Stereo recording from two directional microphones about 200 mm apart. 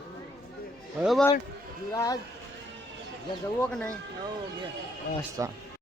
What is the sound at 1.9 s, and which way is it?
Speech, 20° left (ahead or behind).